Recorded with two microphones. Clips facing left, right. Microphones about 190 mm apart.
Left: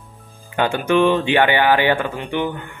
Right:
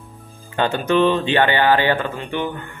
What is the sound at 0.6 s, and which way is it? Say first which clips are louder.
Speech: left 1 dB; 10° left (ahead or behind).